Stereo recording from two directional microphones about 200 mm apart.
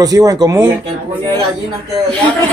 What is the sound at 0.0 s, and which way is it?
Speech, 15° right (ahead or behind).